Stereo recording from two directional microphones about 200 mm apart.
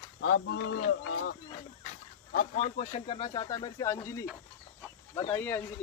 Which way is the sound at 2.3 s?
35° left (ahead or behind).